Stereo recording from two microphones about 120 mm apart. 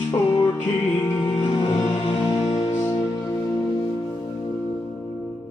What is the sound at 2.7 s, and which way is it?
Music, 20° left (ahead or behind).